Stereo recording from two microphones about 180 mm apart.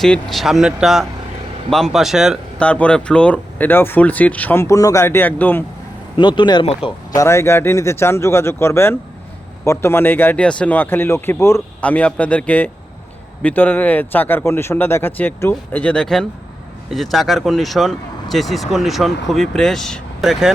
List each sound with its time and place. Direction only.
0.0 s speech: centre (ahead or behind)
6.1 s speech: 25° left (ahead or behind); by 20.5 s centre (ahead or behind)